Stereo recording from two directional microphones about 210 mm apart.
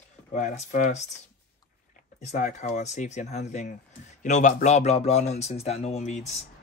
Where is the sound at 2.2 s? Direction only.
35° left (ahead or behind).